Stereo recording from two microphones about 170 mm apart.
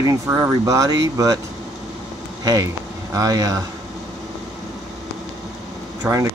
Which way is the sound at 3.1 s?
20° right (ahead or behind).